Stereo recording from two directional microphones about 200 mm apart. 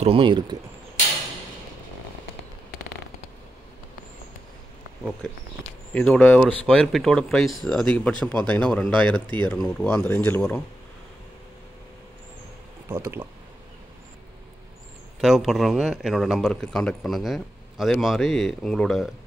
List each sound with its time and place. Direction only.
0.0 s speech: 25° right (ahead or behind)
5.2 s speech: centre (ahead or behind)
12.8 s speech: 10° right (ahead or behind)
15.1 s speech: centre (ahead or behind)